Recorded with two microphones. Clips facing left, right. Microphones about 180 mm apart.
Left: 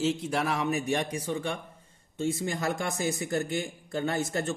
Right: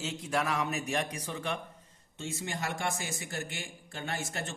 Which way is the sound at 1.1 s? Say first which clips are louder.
Left 5 dB; 30° left (ahead or behind).